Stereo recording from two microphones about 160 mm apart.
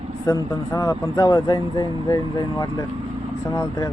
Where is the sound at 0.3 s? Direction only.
20° left (ahead or behind).